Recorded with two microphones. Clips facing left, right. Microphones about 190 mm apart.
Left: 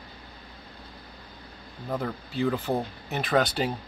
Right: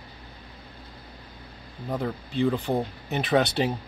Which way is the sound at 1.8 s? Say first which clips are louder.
Right 1 dB; centre (ahead or behind).